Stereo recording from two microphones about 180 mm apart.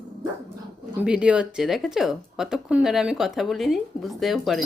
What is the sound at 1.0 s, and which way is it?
Speech, 5° right (ahead or behind).